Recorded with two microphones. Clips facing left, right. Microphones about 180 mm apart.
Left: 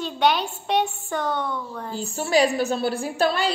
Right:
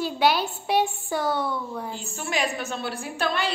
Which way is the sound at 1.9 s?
35° left (ahead or behind).